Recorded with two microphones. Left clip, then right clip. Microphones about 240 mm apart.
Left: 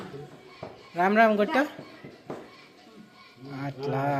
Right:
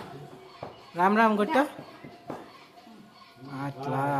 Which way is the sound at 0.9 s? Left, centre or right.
Centre.